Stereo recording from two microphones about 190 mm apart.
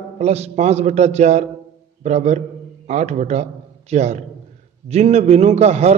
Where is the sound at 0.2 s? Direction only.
35° right (ahead or behind).